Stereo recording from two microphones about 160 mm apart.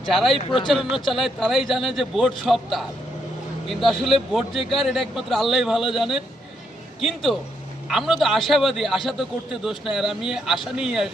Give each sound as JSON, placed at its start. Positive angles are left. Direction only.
{"t": 0.0, "sound": "a man's voice", "side_deg": 0}
{"t": 0.3, "sound": "speech", "side_deg": 35}
{"t": 0.7, "sound": "a man's voice", "side_deg": 0}
{"t": 3.8, "sound": "a man's voice", "side_deg": 0}